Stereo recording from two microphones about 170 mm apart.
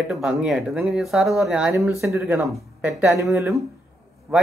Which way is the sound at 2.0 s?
15° right (ahead or behind).